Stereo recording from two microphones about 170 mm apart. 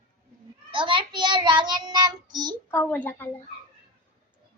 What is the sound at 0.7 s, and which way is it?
Child singing, 30° right (ahead or behind).